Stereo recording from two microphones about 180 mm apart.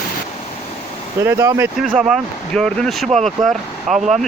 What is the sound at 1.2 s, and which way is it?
Speech, 15° right (ahead or behind).